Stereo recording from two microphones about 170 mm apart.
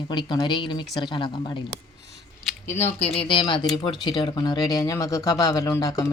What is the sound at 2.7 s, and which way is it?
Speech, 35° left (ahead or behind).